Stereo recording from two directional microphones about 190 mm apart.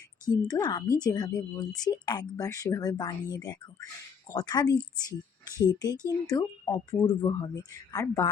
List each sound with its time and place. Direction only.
0.4 s speech: 20° left (ahead or behind)